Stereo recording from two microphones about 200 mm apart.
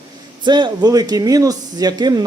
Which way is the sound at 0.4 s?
20° right (ahead or behind).